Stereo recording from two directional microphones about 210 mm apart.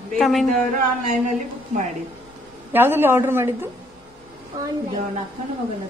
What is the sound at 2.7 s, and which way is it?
Speech, 10° right (ahead or behind).